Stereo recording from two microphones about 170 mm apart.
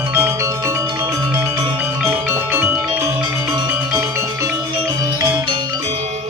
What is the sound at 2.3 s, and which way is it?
Music, 15° right (ahead or behind).